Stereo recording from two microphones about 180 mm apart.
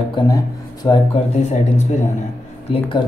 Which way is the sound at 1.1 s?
40° left (ahead or behind).